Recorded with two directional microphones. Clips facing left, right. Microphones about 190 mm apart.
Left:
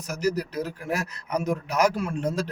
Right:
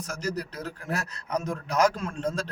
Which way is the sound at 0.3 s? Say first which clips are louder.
Left 5 dB; 10° left (ahead or behind).